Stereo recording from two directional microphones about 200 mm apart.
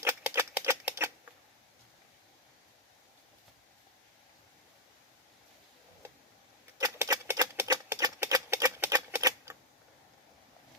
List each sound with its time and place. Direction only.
0.0 s typewriter: 10° right (ahead or behind)
6.7 s typewriter: 15° right (ahead or behind)